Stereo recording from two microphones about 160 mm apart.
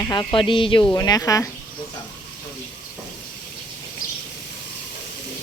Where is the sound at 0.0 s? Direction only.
25° left (ahead or behind).